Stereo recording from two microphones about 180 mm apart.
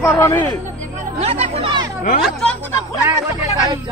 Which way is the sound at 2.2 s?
Centre (ahead or behind).